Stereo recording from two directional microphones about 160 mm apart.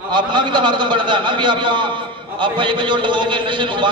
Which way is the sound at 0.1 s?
30° right (ahead or behind).